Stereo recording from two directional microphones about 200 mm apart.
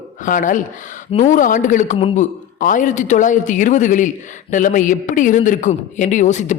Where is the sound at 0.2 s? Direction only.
40° left (ahead or behind).